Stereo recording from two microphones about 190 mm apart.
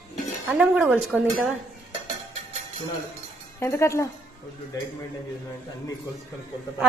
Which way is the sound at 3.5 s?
15° left (ahead or behind).